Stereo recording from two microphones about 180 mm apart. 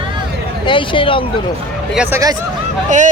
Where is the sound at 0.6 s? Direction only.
30° left (ahead or behind).